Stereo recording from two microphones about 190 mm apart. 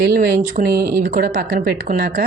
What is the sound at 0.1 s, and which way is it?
A woman's voice, 55° right (ahead or behind).